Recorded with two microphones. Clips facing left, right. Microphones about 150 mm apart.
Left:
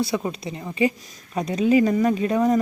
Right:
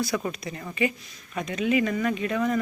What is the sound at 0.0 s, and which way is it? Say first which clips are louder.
Speech: left 3 dB; 30° left (ahead or behind).